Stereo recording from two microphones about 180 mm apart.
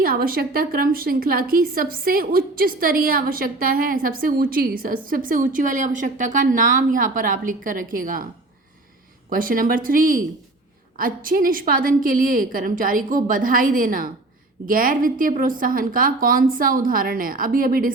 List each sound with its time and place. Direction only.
0.0 s a woman's voice: 55° right (ahead or behind)
9.3 s a woman's voice: 50° right (ahead or behind)